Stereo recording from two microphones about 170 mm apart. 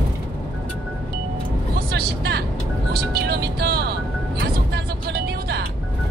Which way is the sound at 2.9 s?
70° right (ahead or behind).